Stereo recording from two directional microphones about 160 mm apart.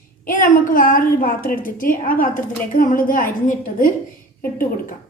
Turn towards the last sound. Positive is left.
turn(degrees=60)  # may be behind; listen again after turning